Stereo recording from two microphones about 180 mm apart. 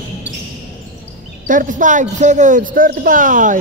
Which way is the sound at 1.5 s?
45° right (ahead or behind).